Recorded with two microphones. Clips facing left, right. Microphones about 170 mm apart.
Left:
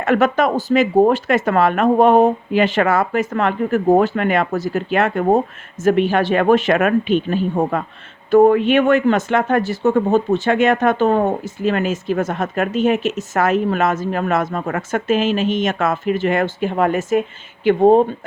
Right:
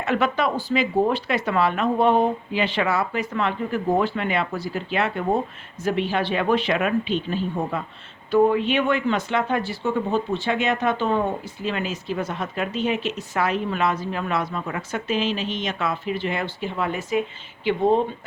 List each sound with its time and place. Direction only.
0.0 s speech: 50° left (ahead or behind)